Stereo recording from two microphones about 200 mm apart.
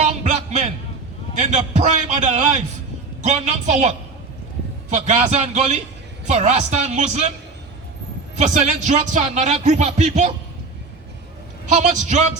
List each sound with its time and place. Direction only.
0.0 s music: 35° right (ahead or behind)
1.4 s speech: 35° right (ahead or behind)
8.4 s speech: 35° right (ahead or behind)
11.7 s speech: 35° right (ahead or behind)